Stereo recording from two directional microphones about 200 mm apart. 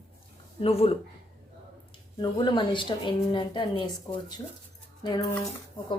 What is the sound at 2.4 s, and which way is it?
A woman's voice, 25° left (ahead or behind).